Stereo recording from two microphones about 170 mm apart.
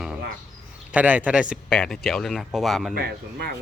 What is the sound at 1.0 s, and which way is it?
Speech, 10° right (ahead or behind).